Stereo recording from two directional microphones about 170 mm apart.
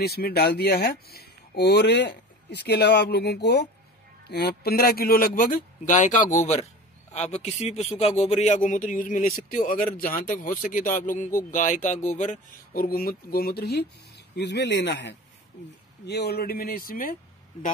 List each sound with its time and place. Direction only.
0.0 s speech: 65° left (ahead or behind); by 15.1 s 90° left
16.1 s speech: 75° left (ahead or behind); by 17.6 s 55° left (ahead or behind)